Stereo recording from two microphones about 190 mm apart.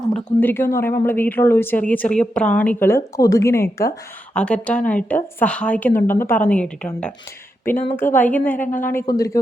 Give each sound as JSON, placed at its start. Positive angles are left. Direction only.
{"t": 0.1, "sound": "speech", "side_deg": 10}